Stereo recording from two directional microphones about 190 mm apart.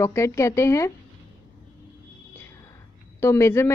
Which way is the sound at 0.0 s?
15° left (ahead or behind).